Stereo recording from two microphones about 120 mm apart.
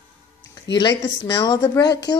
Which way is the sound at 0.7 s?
40° left (ahead or behind).